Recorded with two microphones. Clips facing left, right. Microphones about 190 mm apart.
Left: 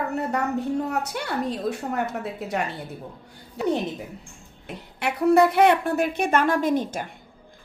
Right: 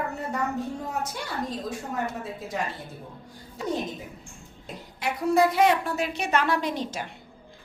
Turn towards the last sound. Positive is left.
turn(degrees=50)  # may be behind; listen again after turning